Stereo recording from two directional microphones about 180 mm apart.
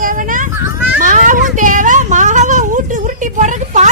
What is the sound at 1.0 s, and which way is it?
Speech, 45° right (ahead or behind).